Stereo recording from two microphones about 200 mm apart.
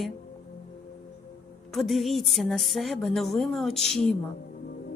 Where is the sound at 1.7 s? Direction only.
Centre (ahead or behind).